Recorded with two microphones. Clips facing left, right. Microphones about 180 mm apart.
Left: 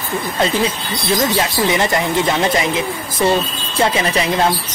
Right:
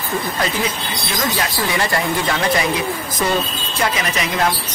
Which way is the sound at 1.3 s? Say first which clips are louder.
Left 4 dB; 25° left (ahead or behind).